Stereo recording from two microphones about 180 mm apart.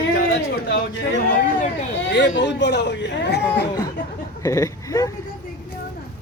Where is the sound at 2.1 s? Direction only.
85° left; by 3.4 s 70° left (ahead or behind).